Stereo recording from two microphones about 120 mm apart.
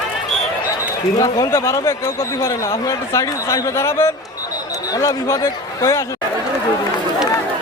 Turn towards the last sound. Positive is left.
turn(degrees=25)  # may be behind; listen again after turning